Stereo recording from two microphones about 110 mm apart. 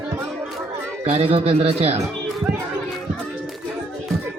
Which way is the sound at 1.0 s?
70° right (ahead or behind).